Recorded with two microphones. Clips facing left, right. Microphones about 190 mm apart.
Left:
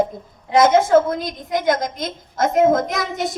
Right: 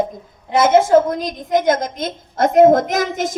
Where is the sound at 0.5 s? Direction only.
10° right (ahead or behind).